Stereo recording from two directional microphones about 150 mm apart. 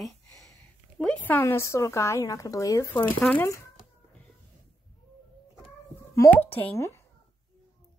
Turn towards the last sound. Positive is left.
turn(degrees=20)  # may be behind; listen again after turning